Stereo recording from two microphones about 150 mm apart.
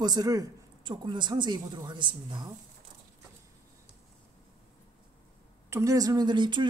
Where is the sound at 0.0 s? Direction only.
25° right (ahead or behind).